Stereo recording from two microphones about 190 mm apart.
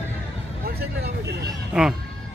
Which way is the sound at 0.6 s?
55° right (ahead or behind).